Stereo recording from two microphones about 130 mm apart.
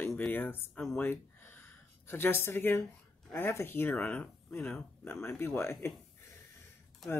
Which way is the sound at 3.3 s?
20° left (ahead or behind).